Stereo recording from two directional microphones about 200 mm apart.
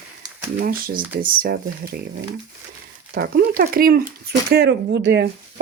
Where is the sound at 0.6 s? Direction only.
45° right (ahead or behind).